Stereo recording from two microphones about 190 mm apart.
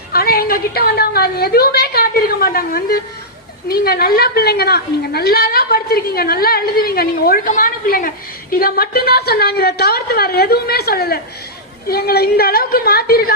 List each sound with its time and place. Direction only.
0.1 s a woman's voice: 55° left (ahead or behind)